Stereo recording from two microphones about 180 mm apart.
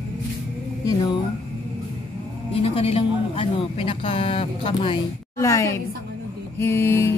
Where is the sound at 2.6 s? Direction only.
35° left (ahead or behind).